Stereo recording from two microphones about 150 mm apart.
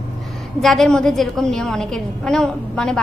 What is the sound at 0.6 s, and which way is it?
A woman's voice, centre (ahead or behind).